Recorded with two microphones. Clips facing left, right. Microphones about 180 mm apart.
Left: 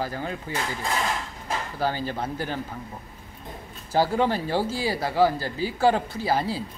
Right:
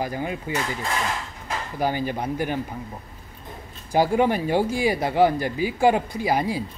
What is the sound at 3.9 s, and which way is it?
Speech, 15° right (ahead or behind).